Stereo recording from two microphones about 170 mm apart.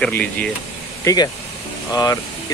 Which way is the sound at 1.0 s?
25° left (ahead or behind).